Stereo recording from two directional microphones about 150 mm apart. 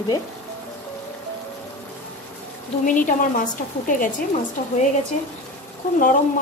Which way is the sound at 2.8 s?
60° left (ahead or behind).